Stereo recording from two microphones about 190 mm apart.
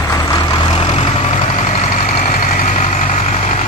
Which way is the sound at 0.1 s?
20° left (ahead or behind).